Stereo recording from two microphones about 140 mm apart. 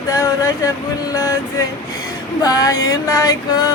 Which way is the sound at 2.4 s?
25° left (ahead or behind).